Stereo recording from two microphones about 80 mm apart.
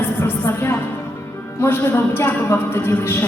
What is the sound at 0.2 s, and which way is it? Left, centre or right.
Music, left.